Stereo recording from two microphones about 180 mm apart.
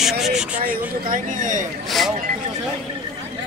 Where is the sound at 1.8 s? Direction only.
Centre (ahead or behind).